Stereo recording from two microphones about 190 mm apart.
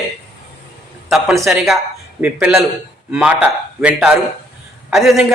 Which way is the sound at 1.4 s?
Centre (ahead or behind).